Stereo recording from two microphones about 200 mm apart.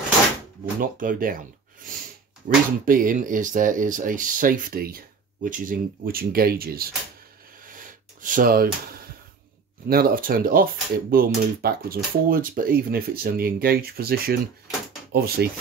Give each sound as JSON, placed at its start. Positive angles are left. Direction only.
{"t": 0.7, "sound": "speech", "side_deg": -45}
{"t": 2.4, "sound": "speech", "side_deg": -45}
{"t": 7.7, "sound": "a sound", "side_deg": -40}
{"t": 9.8, "sound": "speech", "side_deg": -50}